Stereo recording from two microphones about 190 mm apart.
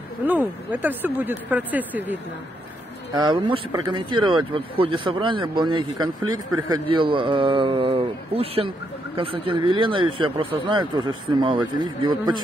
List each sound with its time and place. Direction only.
0.3 s speech: 10° right (ahead or behind)
3.2 s a man's voice: 25° right (ahead or behind)